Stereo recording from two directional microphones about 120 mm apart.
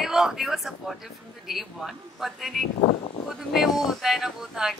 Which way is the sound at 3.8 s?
Centre (ahead or behind).